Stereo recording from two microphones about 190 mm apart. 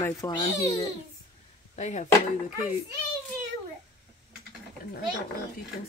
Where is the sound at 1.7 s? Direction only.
35° left (ahead or behind).